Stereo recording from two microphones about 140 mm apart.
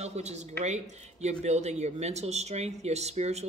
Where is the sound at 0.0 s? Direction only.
50° right (ahead or behind).